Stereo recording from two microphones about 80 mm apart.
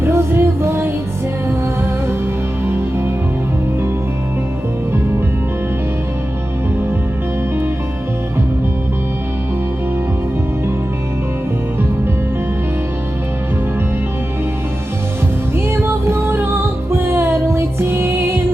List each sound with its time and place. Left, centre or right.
0.0 s music: right
15.5 s music: right